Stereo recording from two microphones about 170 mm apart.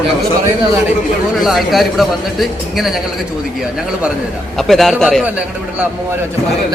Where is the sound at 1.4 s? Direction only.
Centre (ahead or behind).